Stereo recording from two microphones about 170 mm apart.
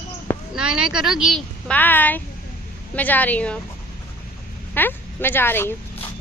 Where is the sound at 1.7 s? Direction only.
10° left (ahead or behind).